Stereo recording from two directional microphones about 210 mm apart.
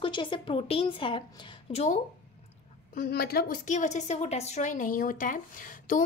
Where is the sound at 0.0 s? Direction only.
20° left (ahead or behind).